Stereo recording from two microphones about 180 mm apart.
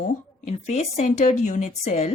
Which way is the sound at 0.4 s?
40° left (ahead or behind).